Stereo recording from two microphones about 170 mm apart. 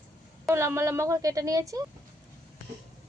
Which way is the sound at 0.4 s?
15° right (ahead or behind).